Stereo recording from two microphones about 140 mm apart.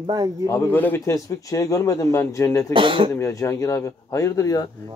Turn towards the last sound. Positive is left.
turn(degrees=25)  # may be behind; listen again after turning